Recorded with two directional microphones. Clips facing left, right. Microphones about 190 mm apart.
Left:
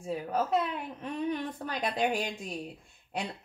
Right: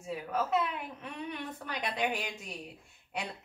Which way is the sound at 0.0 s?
35° left (ahead or behind).